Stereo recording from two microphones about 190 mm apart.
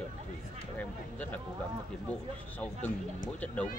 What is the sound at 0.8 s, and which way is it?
Speech, 10° left (ahead or behind).